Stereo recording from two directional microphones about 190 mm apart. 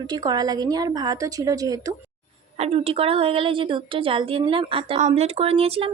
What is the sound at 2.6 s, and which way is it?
A woman's voice, 30° right (ahead or behind).